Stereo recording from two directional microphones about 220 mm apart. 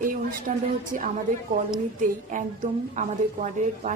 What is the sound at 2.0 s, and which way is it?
A woman's voice, 35° right (ahead or behind).